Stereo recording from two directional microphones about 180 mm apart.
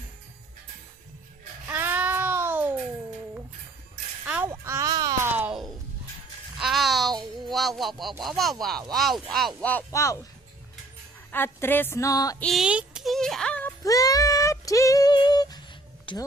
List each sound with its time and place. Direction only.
1.7 s child singing: 10° right (ahead or behind)
4.4 s a sound: 15° right (ahead or behind)
5.3 s music: 5° right (ahead or behind)
8.2 s speech: centre (ahead or behind); by 10.2 s 15° left (ahead or behind)
11.3 s a woman's voice: 10° left (ahead or behind)
12.4 s music: centre (ahead or behind); by 15.6 s 20° left (ahead or behind)
16.1 s speech: 30° left (ahead or behind)